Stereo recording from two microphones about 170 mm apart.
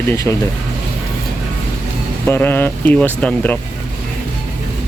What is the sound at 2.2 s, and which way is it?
Speech, 15° left (ahead or behind).